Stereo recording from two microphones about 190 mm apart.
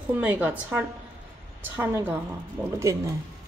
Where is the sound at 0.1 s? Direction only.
10° right (ahead or behind).